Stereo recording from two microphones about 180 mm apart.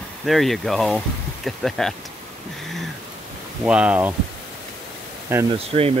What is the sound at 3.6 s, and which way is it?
Speech, 5° right (ahead or behind).